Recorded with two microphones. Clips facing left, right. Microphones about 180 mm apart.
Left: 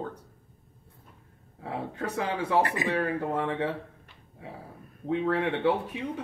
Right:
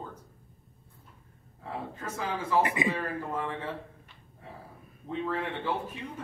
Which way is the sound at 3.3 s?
70° left (ahead or behind).